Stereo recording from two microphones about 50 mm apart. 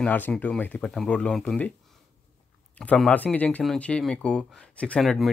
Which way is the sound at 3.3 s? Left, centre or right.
Left.